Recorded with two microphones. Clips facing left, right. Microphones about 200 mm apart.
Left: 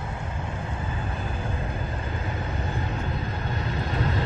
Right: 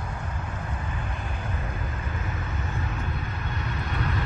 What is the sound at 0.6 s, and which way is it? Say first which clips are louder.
Vehicle: left 2 dB; 25° left (ahead or behind).